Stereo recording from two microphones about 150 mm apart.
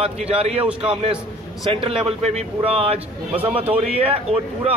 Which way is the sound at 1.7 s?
35° right (ahead or behind).